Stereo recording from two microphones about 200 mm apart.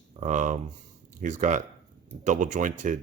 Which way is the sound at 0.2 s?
40° right (ahead or behind).